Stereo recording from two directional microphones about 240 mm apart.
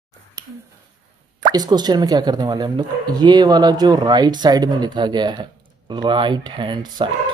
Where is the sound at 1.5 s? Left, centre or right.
Centre.